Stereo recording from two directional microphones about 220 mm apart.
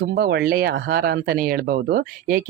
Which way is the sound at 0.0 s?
45° right (ahead or behind).